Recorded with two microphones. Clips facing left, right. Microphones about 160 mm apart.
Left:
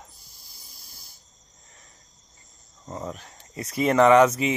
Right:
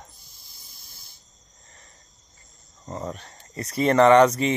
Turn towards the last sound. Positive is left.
turn(degrees=5)  # may be behind; listen again after turning